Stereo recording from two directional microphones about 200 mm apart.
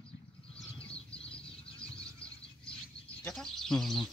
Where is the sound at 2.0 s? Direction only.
5° left (ahead or behind).